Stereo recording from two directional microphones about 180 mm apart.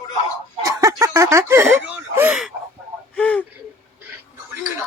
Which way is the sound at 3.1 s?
5° left (ahead or behind).